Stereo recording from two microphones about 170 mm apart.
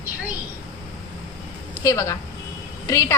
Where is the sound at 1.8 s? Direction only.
20° left (ahead or behind).